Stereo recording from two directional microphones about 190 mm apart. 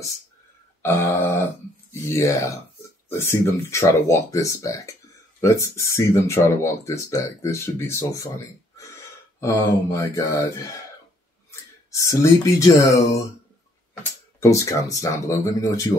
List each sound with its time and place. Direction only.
0.8 s speech: 10° left (ahead or behind)
9.4 s speech: 15° left (ahead or behind)
11.9 s speech: 15° left (ahead or behind)
14.4 s speech: 15° left (ahead or behind)